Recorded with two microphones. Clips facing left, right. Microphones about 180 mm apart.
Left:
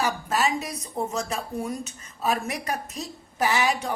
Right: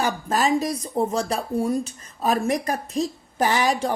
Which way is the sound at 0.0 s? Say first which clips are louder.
Right 3 dB; 35° right (ahead or behind).